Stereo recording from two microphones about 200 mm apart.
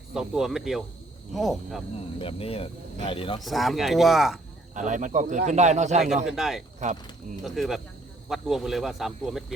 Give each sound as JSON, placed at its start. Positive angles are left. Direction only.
{"t": 0.1, "sound": "speech", "side_deg": -5}
{"t": 2.1, "sound": "speech", "side_deg": 30}
{"t": 3.4, "sound": "speech", "side_deg": 0}
{"t": 4.7, "sound": "speech", "side_deg": -40}
{"t": 6.2, "sound": "speech", "side_deg": 0}
{"t": 6.8, "sound": "speech", "side_deg": -35}
{"t": 7.4, "sound": "speech", "side_deg": 0}